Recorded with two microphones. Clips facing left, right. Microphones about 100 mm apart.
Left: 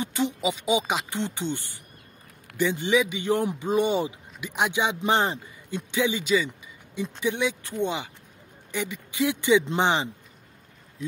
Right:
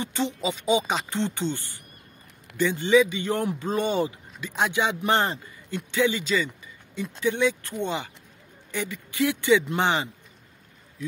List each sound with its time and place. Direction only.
0.0 s a man's voice: 10° left (ahead or behind)